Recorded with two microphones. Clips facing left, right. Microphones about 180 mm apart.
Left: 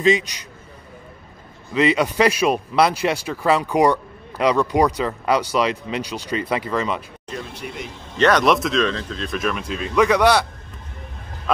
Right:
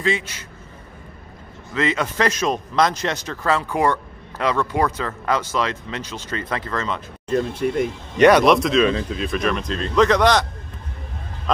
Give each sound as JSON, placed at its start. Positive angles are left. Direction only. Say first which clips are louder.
{"t": 0.0, "sound": "speech", "louder": "left 5 dB", "side_deg": 15}
{"t": 1.7, "sound": "speech", "louder": "left 4 dB", "side_deg": 15}
{"t": 7.2, "sound": "speech", "louder": "right 13 dB", "side_deg": -50}
{"t": 8.2, "sound": "speech", "louder": "right 4 dB", "side_deg": -10}
{"t": 8.5, "sound": "speech", "louder": "right 3 dB", "side_deg": 0}